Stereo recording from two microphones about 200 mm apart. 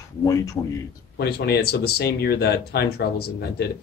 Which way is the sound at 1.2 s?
50° left (ahead or behind).